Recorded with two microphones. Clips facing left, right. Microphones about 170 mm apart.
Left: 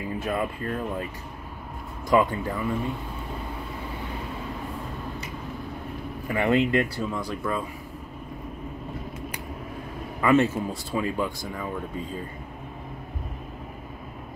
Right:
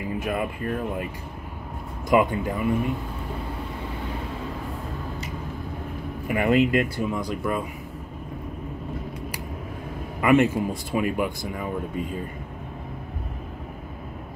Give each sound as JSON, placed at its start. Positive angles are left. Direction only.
{"t": 0.2, "sound": "speech", "side_deg": -10}
{"t": 2.0, "sound": "speech", "side_deg": -15}
{"t": 6.2, "sound": "speech", "side_deg": -10}
{"t": 10.2, "sound": "speech", "side_deg": -15}